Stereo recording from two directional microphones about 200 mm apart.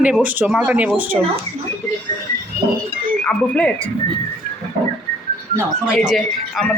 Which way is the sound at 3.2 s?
5° left (ahead or behind).